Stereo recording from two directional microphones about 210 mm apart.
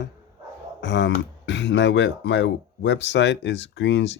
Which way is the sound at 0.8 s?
60° left (ahead or behind).